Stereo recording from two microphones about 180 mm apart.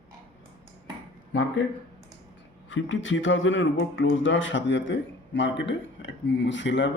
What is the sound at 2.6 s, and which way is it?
Speech, 90° left.